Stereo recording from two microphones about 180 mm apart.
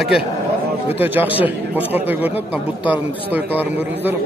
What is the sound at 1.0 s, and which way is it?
A man's voice, 10° right (ahead or behind).